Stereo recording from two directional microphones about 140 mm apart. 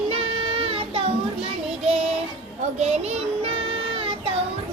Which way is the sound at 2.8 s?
50° right (ahead or behind).